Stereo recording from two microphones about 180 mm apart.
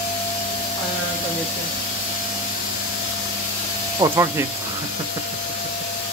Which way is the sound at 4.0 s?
15° right (ahead or behind).